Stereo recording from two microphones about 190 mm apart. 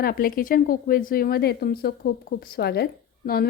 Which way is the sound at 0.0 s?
50° left (ahead or behind).